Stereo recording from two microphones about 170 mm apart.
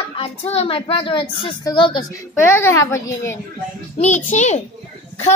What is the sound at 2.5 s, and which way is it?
Speech, 15° left (ahead or behind).